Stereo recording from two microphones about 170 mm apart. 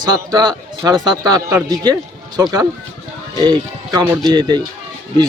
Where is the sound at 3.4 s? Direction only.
25° right (ahead or behind).